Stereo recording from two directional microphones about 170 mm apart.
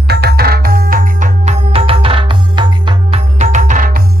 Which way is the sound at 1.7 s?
35° right (ahead or behind).